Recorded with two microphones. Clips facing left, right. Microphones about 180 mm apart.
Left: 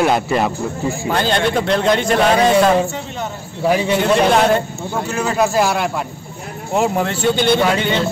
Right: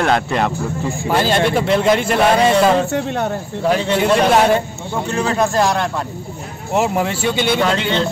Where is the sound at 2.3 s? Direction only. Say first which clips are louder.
Left 2 dB; 5° left (ahead or behind).